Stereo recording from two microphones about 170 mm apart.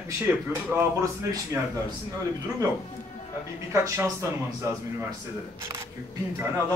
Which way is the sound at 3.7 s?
15° right (ahead or behind).